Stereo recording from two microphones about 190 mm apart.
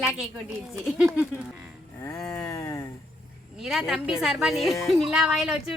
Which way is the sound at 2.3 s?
15° left (ahead or behind).